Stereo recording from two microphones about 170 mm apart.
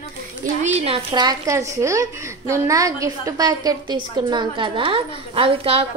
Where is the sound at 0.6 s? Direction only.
35° right (ahead or behind).